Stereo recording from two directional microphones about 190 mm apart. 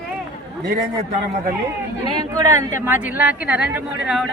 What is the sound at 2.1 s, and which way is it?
A woman's voice, 15° right (ahead or behind).